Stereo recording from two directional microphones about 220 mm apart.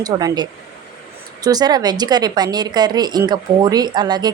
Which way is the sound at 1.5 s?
15° right (ahead or behind).